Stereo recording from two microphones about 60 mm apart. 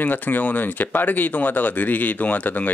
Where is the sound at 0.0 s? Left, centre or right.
Left.